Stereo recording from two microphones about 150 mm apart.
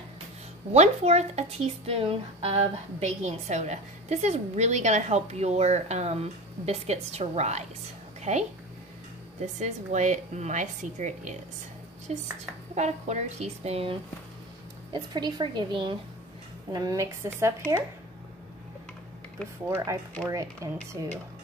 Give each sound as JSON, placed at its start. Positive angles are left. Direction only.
{"t": 0.7, "sound": "a woman's voice", "side_deg": -45}
{"t": 9.6, "sound": "a woman's voice", "side_deg": -55}
{"t": 14.9, "sound": "a woman's voice", "side_deg": -30}
{"t": 20.2, "sound": "a woman's voice", "side_deg": -25}